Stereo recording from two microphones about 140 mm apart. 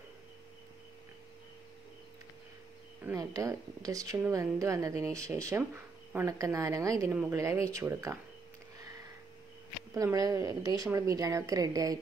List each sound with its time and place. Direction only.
3.0 s a woman's voice: 20° right (ahead or behind)
9.9 s a woman's voice: 25° right (ahead or behind)